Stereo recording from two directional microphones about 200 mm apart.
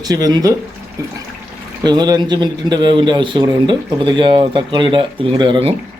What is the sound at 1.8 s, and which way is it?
A man's voice, 20° right (ahead or behind).